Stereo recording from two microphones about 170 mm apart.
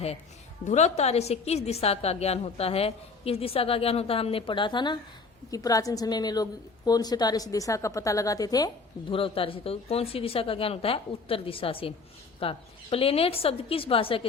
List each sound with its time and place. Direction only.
0.6 s a woman's voice: 45° left (ahead or behind)